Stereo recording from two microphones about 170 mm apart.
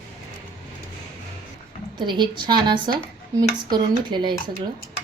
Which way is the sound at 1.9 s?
25° right (ahead or behind).